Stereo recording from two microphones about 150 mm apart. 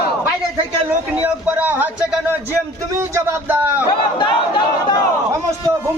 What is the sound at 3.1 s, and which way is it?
Speech, 15° right (ahead or behind).